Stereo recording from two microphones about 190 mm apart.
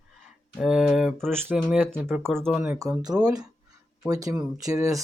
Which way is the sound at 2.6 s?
15° right (ahead or behind).